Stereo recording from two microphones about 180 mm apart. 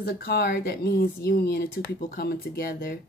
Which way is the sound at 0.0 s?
60° left (ahead or behind).